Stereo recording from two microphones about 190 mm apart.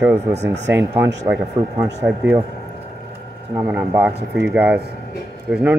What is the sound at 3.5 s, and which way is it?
Speech, 10° right (ahead or behind).